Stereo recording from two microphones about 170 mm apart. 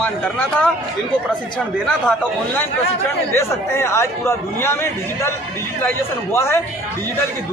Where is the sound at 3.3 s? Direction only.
15° left (ahead or behind).